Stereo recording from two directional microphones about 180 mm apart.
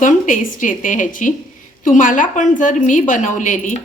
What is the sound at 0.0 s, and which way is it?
A woman's voice, 45° left (ahead or behind).